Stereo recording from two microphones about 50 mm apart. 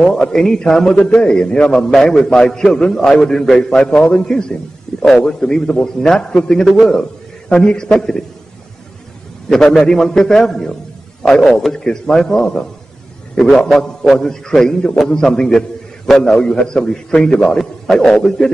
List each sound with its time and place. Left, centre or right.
0.0 s a man's voice: centre
1.1 s a man's voice: left
6.9 s a sound: centre
7.5 s a man's voice: centre
9.5 s a man's voice: centre
13.7 s a man's voice: centre